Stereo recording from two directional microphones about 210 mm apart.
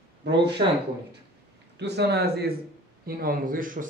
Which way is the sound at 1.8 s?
50° right (ahead or behind).